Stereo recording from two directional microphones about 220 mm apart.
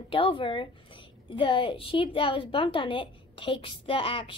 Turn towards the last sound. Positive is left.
turn(degrees=25)  # may be behind; listen again after turning